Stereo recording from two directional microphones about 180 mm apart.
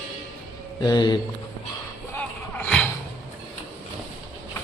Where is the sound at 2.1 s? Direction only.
10° left (ahead or behind).